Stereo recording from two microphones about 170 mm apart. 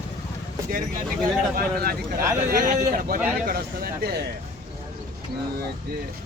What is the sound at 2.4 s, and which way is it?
A man's voice, 55° right (ahead or behind).